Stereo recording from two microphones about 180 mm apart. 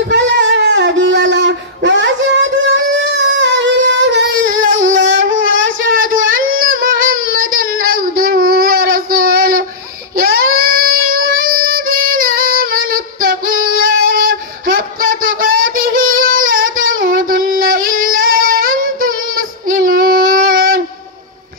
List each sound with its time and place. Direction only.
0.1 s a sound: 75° right (ahead or behind)
4.6 s music: 90° right
5.9 s child singing: 50° right (ahead or behind)